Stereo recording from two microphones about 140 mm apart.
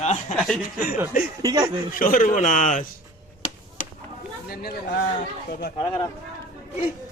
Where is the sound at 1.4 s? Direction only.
30° right (ahead or behind).